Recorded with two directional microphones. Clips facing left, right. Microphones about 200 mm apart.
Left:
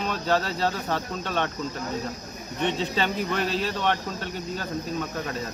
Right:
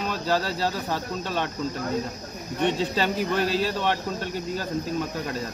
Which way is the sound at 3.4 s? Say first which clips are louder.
Right 3 dB; 40° right (ahead or behind).